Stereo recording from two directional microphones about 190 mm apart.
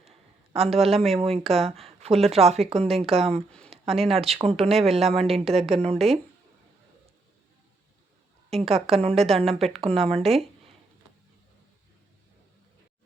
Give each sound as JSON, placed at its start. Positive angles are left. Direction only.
{"t": 0.5, "sound": "a woman's voice", "side_deg": -30}
{"t": 8.5, "sound": "a woman's voice", "side_deg": -30}